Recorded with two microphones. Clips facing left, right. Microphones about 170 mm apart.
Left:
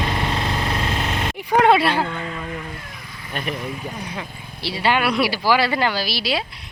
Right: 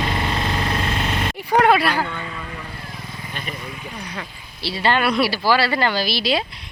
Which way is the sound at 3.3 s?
50° left (ahead or behind).